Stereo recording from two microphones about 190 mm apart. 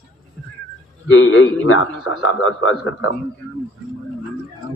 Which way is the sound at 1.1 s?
90° left.